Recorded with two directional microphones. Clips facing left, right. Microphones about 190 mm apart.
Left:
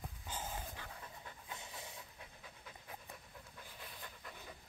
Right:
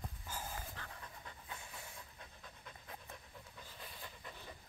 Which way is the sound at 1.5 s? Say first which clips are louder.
Left 2 dB; 20° left (ahead or behind).